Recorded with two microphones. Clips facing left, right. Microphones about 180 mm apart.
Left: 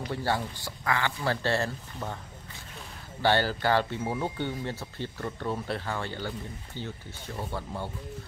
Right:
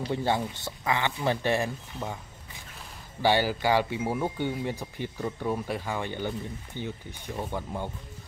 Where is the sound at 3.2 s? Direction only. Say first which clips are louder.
Right 1 dB; 10° right (ahead or behind).